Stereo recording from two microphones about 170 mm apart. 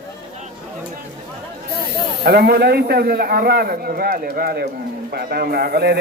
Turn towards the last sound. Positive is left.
turn(degrees=-70)  # may be behind; listen again after turning